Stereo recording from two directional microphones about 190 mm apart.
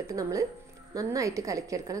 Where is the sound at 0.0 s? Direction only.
15° right (ahead or behind).